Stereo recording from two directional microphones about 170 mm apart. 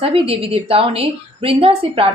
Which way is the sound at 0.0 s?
35° right (ahead or behind).